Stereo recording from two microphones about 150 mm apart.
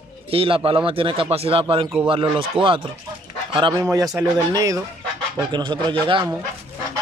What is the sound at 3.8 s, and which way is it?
Speech, 20° right (ahead or behind).